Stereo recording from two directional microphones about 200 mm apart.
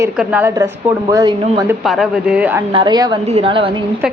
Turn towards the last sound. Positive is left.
turn(degrees=-25)  # may be behind; listen again after turning